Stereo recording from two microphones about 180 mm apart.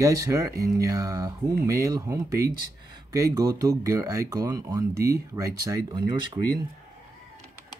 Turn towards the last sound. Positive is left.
turn(degrees=-25)  # may be behind; listen again after turning